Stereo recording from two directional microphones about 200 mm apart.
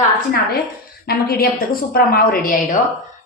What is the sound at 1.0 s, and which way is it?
A woman's voice, 50° left (ahead or behind).